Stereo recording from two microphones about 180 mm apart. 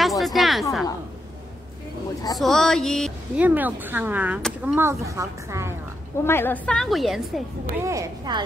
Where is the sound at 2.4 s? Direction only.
Centre (ahead or behind); by 5.7 s 15° right (ahead or behind).